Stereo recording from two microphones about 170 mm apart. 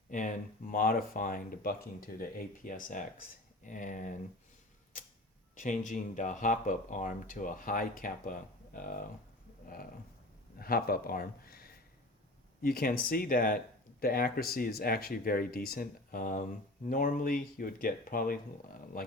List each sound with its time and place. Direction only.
0.1 s speech: 50° left (ahead or behind)
4.9 s tick-tock: 50° left (ahead or behind)
5.8 s speech: 50° left (ahead or behind)
9.6 s a sound: 60° left (ahead or behind)
10.6 s speech: 60° left (ahead or behind)